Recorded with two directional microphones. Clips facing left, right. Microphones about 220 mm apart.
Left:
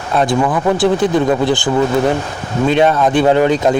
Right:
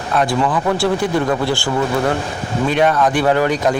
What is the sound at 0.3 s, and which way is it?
Speech, 20° left (ahead or behind).